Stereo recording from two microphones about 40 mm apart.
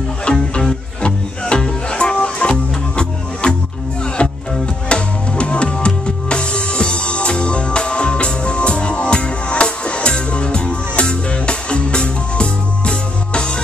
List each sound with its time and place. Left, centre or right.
0.3 s music: centre